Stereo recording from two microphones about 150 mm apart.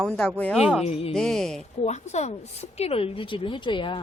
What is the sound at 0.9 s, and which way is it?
Speech, 40° left (ahead or behind).